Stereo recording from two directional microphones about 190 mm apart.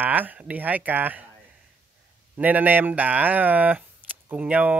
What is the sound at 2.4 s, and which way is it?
Speech, 10° right (ahead or behind).